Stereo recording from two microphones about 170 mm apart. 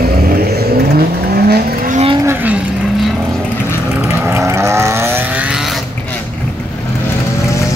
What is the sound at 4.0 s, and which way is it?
Vehicle, 15° right (ahead or behind).